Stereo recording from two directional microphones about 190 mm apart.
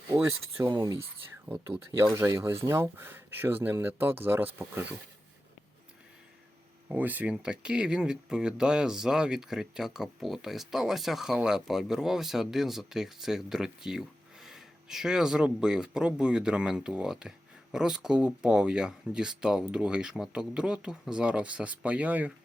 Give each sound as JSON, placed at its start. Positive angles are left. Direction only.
{"t": 0.1, "sound": "speech", "side_deg": -20}
{"t": 6.8, "sound": "speech", "side_deg": -10}